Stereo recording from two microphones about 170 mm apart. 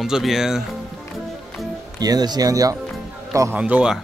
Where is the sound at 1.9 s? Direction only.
25° right (ahead or behind).